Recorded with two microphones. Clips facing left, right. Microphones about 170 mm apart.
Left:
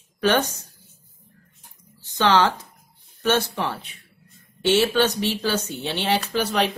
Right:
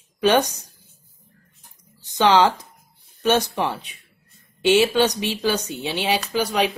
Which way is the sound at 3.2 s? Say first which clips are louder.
Right 2 dB; 15° right (ahead or behind).